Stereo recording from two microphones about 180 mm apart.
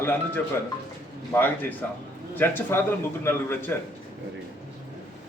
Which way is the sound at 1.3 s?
10° left (ahead or behind).